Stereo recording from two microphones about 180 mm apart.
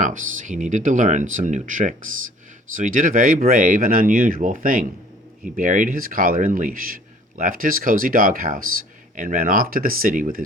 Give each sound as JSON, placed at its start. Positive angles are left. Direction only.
{"t": 0.0, "sound": "a man's voice", "side_deg": -45}